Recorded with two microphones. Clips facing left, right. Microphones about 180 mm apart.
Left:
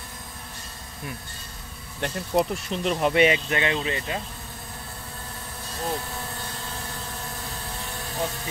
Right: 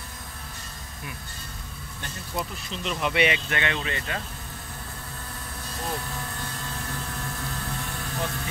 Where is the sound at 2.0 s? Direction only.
60° left (ahead or behind).